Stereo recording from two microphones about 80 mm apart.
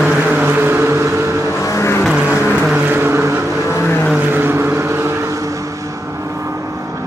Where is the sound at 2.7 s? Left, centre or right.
Right.